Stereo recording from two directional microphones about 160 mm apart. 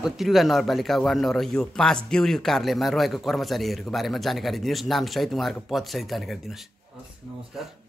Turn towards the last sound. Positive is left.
turn(degrees=0)  # may be behind; listen again after turning